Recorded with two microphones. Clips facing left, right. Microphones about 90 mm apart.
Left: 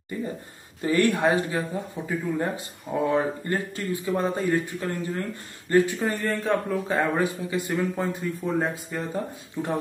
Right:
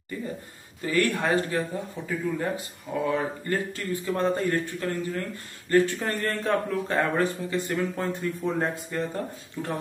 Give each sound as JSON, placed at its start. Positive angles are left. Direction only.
{"t": 0.8, "sound": "speech", "side_deg": 20}
{"t": 5.9, "sound": "speech", "side_deg": 5}